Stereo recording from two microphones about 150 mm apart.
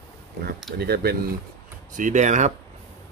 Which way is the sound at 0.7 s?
90° right.